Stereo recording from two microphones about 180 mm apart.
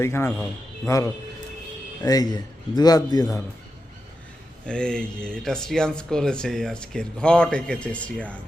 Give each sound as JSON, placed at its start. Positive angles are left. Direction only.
{"t": 0.0, "sound": "a man's voice", "side_deg": 15}
{"t": 4.6, "sound": "speech", "side_deg": 5}